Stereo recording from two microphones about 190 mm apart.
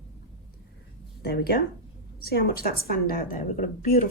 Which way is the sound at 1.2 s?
55° left (ahead or behind).